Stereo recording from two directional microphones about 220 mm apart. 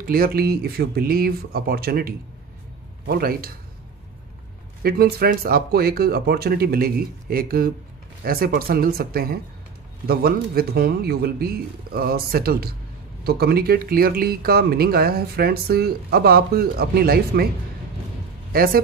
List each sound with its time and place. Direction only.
0.0 s speech: 40° right (ahead or behind)
4.8 s speech: 45° right (ahead or behind)
18.5 s speech: 40° right (ahead or behind)